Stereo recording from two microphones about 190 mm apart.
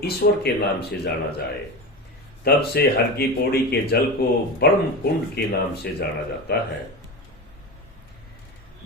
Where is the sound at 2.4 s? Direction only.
55° left (ahead or behind).